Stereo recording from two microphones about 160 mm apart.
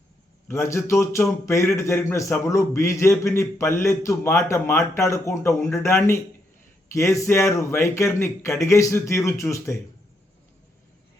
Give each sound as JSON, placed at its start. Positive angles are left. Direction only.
{"t": 0.4, "sound": "a man's voice", "side_deg": 15}